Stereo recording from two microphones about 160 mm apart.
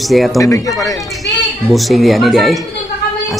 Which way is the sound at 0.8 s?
Centre (ahead or behind).